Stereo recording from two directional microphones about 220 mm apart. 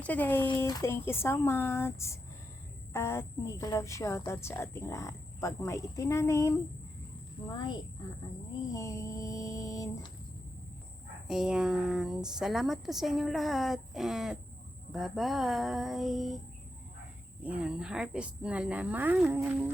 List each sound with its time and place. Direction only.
0.0 s a woman's voice: 5° left (ahead or behind)
8.7 s a sound: 15° left (ahead or behind)
11.3 s speech: centre (ahead or behind)
17.4 s speech: 5° right (ahead or behind)